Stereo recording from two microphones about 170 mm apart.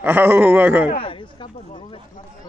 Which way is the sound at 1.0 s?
30° left (ahead or behind).